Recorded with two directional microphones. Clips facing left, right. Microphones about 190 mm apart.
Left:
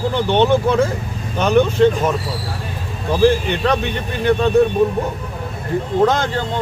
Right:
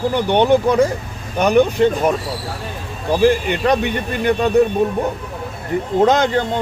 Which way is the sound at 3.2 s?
15° right (ahead or behind).